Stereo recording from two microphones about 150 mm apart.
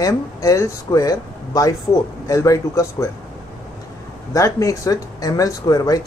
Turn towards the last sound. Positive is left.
turn(degrees=25)  # may be behind; listen again after turning